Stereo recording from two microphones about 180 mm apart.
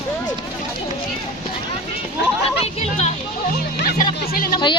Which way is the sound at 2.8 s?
35° left (ahead or behind).